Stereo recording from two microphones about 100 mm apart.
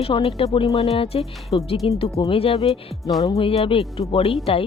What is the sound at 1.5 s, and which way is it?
Speech, 55° left (ahead or behind).